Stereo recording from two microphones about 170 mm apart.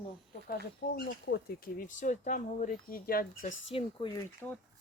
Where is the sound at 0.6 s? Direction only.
70° left (ahead or behind).